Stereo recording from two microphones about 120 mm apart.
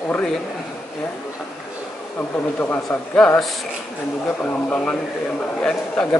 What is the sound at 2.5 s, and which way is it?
Speech, 15° left (ahead or behind).